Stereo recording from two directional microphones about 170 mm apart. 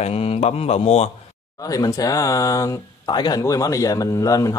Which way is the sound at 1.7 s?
20° left (ahead or behind).